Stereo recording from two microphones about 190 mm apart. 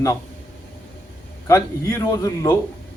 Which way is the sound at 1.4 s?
15° left (ahead or behind).